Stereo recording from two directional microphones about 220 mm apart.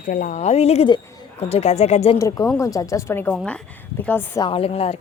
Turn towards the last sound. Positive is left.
turn(degrees=25)  # may be behind; listen again after turning